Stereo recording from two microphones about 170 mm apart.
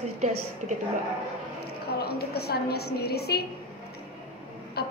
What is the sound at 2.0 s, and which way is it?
A woman's voice, 70° left (ahead or behind).